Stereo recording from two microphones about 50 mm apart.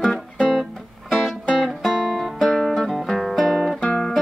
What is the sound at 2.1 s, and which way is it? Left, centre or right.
Guitar, centre.